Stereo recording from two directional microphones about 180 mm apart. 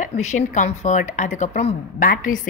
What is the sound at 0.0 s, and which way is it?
A woman's voice, 40° left (ahead or behind).